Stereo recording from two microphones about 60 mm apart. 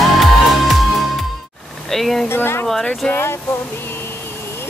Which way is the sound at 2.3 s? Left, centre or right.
Left.